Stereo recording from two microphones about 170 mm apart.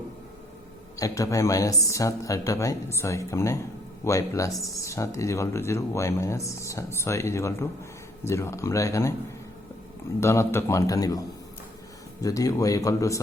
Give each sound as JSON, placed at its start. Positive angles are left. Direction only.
{"t": 0.9, "sound": "speech", "side_deg": 20}
{"t": 10.2, "sound": "speech", "side_deg": 15}